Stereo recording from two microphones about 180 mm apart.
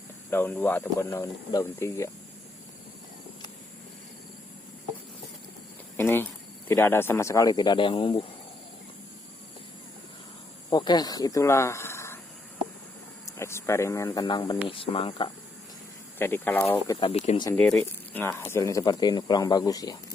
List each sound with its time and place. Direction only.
0.3 s speech: 10° left (ahead or behind)
6.0 s cricket: 10° left (ahead or behind)
6.7 s speech: 10° left (ahead or behind); by 8.2 s 30° left (ahead or behind)
10.7 s speech: 25° left (ahead or behind)
13.2 s speech: 15° left (ahead or behind)
16.1 s speech: 10° left (ahead or behind)
17.0 s speech: 35° left (ahead or behind)
17.6 s speech: 5° left (ahead or behind); by 20.0 s 20° left (ahead or behind)